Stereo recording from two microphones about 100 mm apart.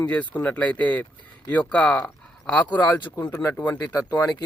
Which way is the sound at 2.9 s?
25° left (ahead or behind).